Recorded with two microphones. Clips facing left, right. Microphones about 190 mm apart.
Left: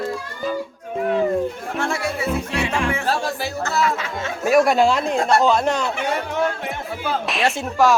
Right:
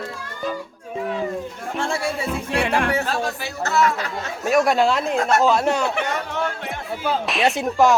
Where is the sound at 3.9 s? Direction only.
40° right (ahead or behind).